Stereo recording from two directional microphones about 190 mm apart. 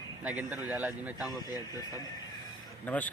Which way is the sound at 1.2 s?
20° left (ahead or behind).